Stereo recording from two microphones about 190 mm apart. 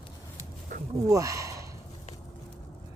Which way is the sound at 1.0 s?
15° right (ahead or behind).